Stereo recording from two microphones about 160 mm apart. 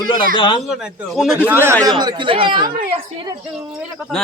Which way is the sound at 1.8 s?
25° right (ahead or behind).